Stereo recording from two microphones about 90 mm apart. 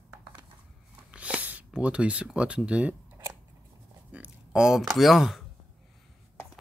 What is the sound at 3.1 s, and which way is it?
Scissors, 30° right (ahead or behind).